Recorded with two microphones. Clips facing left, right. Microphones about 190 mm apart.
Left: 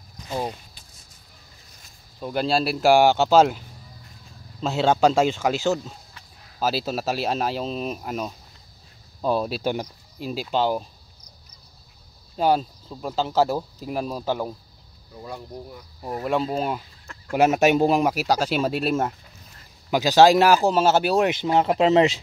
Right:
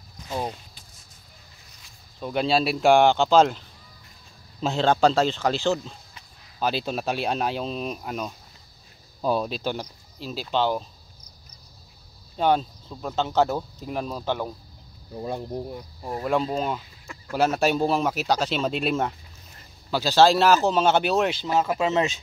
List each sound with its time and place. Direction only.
0.3 s speech: 5° left (ahead or behind)
2.1 s speech: centre (ahead or behind)
4.6 s speech: 5° left (ahead or behind)
12.4 s speech: 5° left (ahead or behind)
15.1 s speech: 25° right (ahead or behind)
17.3 s speech: 15° left (ahead or behind)
19.9 s speech: 15° left (ahead or behind)
21.4 s speech: 25° left (ahead or behind)